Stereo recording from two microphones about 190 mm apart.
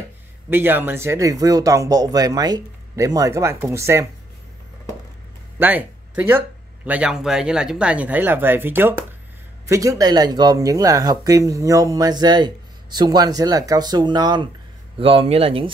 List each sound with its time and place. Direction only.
0.5 s speech: 10° right (ahead or behind)
5.6 s speech: 10° right (ahead or behind); by 15.7 s 30° right (ahead or behind)